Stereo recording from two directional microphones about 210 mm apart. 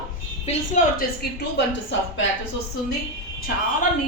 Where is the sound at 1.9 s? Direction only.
60° left (ahead or behind).